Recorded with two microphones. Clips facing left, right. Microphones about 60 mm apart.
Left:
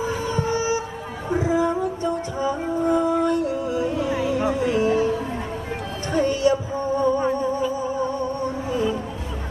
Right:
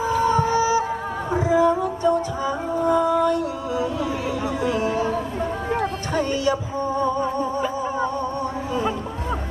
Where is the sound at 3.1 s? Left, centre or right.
Left.